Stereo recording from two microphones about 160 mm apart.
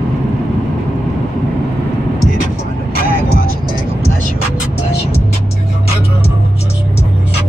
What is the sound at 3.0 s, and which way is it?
Vehicle, 65° right (ahead or behind).